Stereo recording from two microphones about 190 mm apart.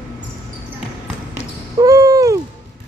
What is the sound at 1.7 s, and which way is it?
Owl, 20° right (ahead or behind).